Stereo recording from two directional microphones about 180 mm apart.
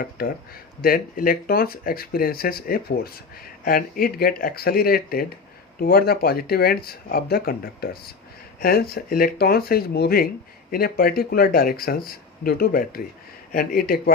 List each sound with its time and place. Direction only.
0.2 s speech: 55° left (ahead or behind)